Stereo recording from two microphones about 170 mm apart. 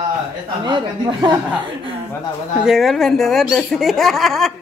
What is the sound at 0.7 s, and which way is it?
Speech, 25° right (ahead or behind).